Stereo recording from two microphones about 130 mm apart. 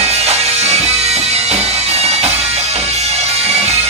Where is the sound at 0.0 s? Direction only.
55° right (ahead or behind).